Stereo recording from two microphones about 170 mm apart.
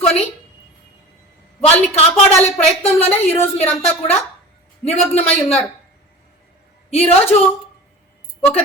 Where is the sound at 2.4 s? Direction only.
15° left (ahead or behind).